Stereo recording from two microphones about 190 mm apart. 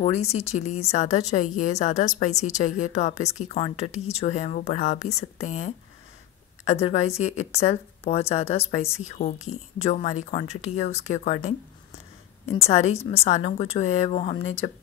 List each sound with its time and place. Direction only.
0.0 s a woman's voice: 35° left (ahead or behind)